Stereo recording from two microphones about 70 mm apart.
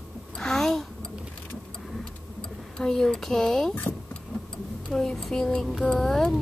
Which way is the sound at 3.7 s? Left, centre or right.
Left.